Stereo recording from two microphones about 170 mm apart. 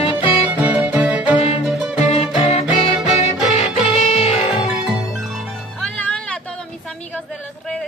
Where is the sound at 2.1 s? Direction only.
35° left (ahead or behind).